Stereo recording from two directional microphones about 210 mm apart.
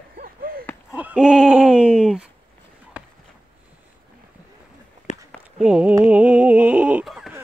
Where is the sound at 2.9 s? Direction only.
5° right (ahead or behind).